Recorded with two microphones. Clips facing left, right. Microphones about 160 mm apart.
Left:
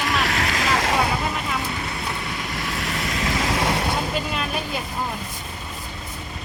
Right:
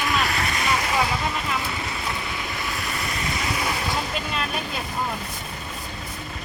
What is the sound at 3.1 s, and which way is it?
Vehicle, 90° left.